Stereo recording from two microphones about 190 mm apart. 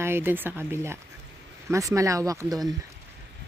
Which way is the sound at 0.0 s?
10° right (ahead or behind).